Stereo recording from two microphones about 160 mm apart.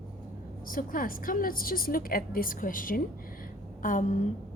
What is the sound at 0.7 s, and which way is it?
A woman's voice, 60° left (ahead or behind).